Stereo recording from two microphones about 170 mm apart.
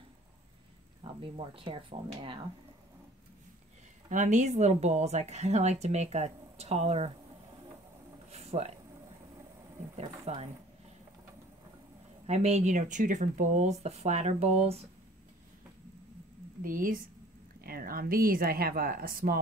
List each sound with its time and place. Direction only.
1.2 s a woman's voice: 35° right (ahead or behind)
4.1 s a woman's voice: 45° right (ahead or behind)
8.3 s a sound: 40° right (ahead or behind)
9.9 s speech: 40° right (ahead or behind)
12.3 s speech: 40° right (ahead or behind)
16.6 s speech: 55° right (ahead or behind)